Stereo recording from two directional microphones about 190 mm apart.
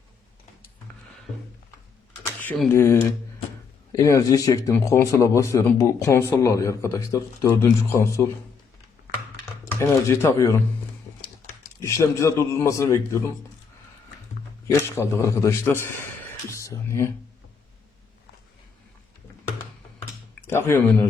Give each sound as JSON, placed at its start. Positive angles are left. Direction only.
{"t": 2.2, "sound": "speech", "side_deg": 10}
{"t": 9.3, "sound": "a sound", "side_deg": 15}
{"t": 11.8, "sound": "speech", "side_deg": 15}
{"t": 14.7, "sound": "speech", "side_deg": 15}
{"t": 16.5, "sound": "a sound", "side_deg": 15}
{"t": 20.5, "sound": "speech", "side_deg": 10}